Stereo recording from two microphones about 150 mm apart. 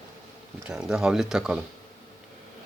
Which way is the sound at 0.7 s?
5° right (ahead or behind).